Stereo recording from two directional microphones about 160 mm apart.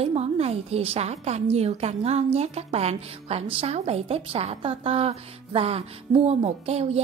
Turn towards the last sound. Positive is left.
turn(degrees=-40)  # may be behind; listen again after turning